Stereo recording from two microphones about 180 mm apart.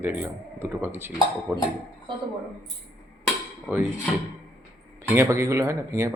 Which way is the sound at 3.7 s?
10° right (ahead or behind).